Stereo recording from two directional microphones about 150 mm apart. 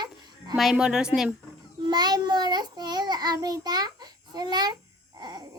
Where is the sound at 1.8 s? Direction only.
30° right (ahead or behind).